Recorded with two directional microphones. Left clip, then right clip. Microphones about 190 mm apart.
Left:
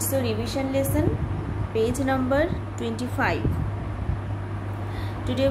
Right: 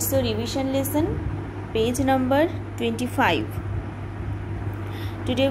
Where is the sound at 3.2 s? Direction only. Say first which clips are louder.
Right 4 dB; 30° right (ahead or behind).